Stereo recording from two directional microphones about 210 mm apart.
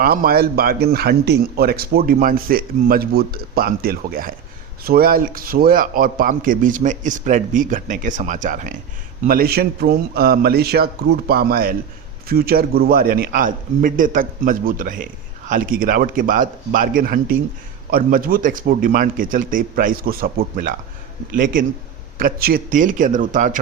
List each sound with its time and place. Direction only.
0.0 s a man's voice: 45° right (ahead or behind)